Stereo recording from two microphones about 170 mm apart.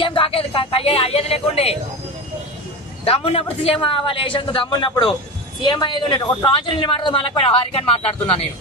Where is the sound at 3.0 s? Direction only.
35° left (ahead or behind).